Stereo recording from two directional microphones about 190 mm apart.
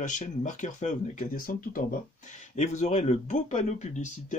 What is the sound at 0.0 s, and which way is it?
Speech, 40° left (ahead or behind).